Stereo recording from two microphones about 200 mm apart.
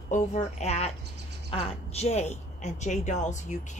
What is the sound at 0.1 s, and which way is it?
A woman's voice, 35° left (ahead or behind).